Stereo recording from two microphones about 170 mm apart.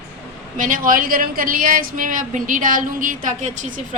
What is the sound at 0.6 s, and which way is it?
A woman's voice, 50° right (ahead or behind).